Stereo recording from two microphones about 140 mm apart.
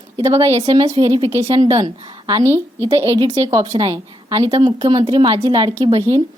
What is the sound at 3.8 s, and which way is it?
A woman's voice, 35° right (ahead or behind).